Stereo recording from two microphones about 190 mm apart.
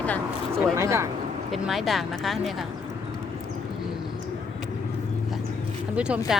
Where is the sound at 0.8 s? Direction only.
15° right (ahead or behind).